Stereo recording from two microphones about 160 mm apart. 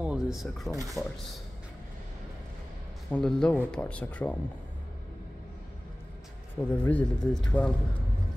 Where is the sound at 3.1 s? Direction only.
5° left (ahead or behind).